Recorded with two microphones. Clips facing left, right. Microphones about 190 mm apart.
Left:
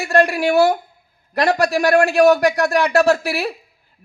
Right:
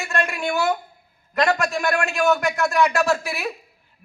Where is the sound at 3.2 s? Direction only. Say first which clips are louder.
Left 6 dB; 35° left (ahead or behind).